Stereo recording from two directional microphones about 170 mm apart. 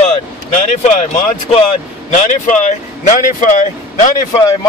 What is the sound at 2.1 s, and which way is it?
Speech, 50° left (ahead or behind).